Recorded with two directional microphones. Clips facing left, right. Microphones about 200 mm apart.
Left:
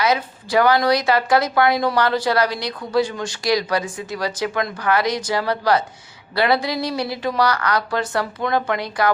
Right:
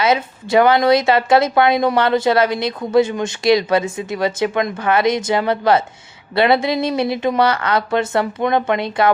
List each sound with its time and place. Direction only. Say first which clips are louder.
0.0 s a woman's voice: right 3 dB; 25° right (ahead or behind)